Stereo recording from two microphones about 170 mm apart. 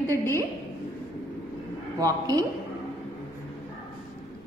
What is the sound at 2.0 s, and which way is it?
Speech, 20° right (ahead or behind).